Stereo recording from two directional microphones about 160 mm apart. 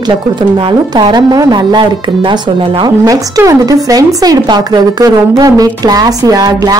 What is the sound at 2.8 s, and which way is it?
Speech, 20° right (ahead or behind).